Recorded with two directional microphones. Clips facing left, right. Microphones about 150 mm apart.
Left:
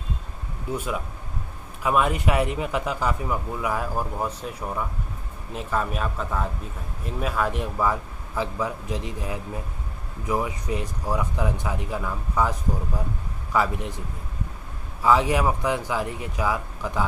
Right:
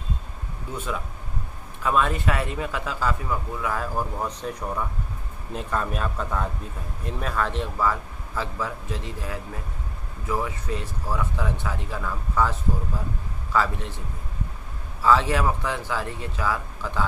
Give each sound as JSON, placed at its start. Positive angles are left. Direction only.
{"t": 1.8, "sound": "speech", "side_deg": 15}